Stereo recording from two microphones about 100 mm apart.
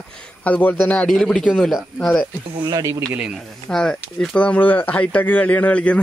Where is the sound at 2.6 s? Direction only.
35° right (ahead or behind).